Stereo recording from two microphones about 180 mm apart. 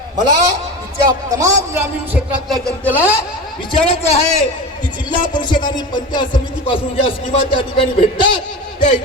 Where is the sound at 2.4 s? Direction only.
5° left (ahead or behind).